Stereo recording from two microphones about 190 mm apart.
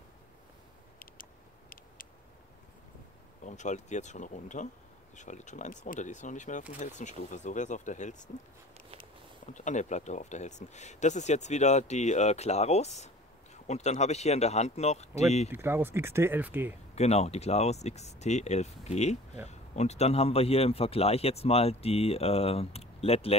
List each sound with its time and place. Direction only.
3.4 s speech: 40° left (ahead or behind)
9.5 s speech: 40° left (ahead or behind)
15.5 s speech: 10° right (ahead or behind)
16.9 s speech: 35° left (ahead or behind)